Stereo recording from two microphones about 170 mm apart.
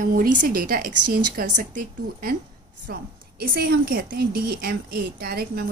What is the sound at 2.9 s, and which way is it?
A woman's voice, 65° right (ahead or behind).